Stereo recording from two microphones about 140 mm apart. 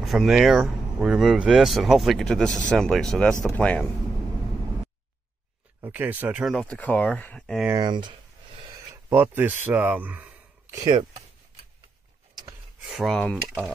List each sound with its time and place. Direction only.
0.0 s speech: centre (ahead or behind)
5.9 s speech: 10° right (ahead or behind)
6.4 s speech: 5° left (ahead or behind)
7.8 s speech: 35° right (ahead or behind)
9.1 s a man's voice: 15° right (ahead or behind)
10.8 s speech: 30° right (ahead or behind)
12.8 s speech: centre (ahead or behind)